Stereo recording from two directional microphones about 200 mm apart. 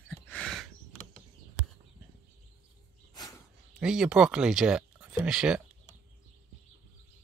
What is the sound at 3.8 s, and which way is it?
Speech, 5° right (ahead or behind).